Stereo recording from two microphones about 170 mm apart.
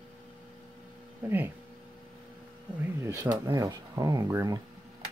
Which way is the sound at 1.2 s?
10° right (ahead or behind).